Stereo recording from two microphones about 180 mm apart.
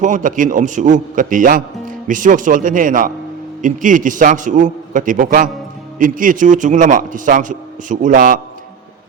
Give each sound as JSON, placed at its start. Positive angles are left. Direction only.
{"t": 0.0, "sound": "a man's voice", "side_deg": -45}